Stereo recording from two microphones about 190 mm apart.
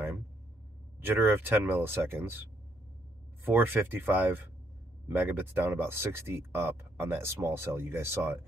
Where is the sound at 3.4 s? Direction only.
10° right (ahead or behind).